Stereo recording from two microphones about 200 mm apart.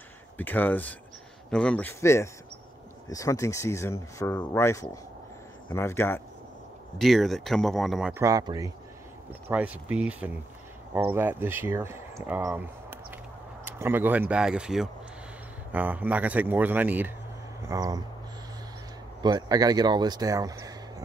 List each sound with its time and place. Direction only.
0.4 s speech: 10° left (ahead or behind)
7.0 s speech: centre (ahead or behind)
8.1 s speech: 15° right (ahead or behind)
19.2 s speech: 20° right (ahead or behind)